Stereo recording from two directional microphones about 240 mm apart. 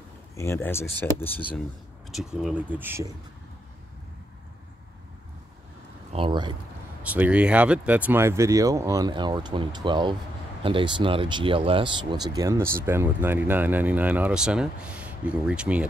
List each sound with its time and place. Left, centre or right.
0.4 s speech: centre
6.1 s speech: right
7.0 s speech: centre